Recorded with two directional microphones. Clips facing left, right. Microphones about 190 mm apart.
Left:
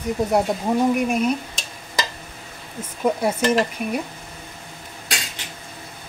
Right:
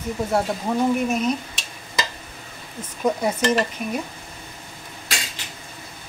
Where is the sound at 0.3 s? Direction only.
20° left (ahead or behind).